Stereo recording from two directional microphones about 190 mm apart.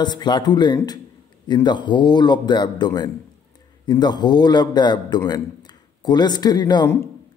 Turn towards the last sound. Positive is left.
turn(degrees=15)  # may be behind; listen again after turning